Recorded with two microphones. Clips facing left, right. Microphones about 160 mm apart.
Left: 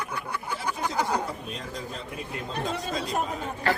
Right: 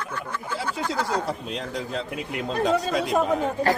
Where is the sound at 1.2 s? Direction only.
80° right.